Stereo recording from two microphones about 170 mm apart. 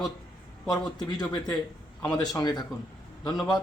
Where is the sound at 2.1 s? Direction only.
20° left (ahead or behind).